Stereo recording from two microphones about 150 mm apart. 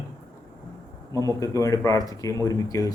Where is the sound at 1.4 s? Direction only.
20° left (ahead or behind).